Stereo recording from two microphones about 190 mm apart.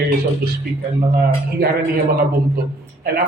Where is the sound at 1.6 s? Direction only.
50° right (ahead or behind).